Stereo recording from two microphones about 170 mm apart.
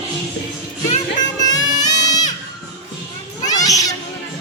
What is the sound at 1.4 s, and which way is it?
Music, 20° left (ahead or behind).